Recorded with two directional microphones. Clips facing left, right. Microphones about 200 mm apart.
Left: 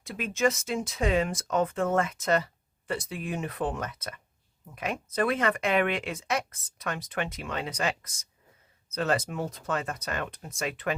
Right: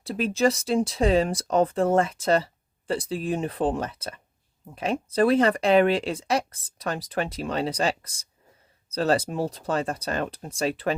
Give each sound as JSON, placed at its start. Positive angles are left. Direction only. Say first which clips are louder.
{"t": 0.0, "sound": "speech", "louder": "right 4 dB", "side_deg": -35}